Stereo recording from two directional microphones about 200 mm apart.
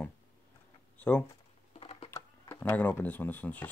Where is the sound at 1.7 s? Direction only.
30° left (ahead or behind).